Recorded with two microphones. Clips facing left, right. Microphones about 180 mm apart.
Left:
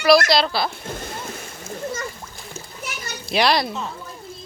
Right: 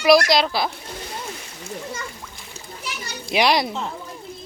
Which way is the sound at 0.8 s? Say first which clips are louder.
Left 2 dB; 50° left (ahead or behind).